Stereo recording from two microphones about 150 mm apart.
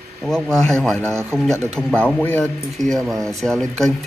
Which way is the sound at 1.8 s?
5° left (ahead or behind).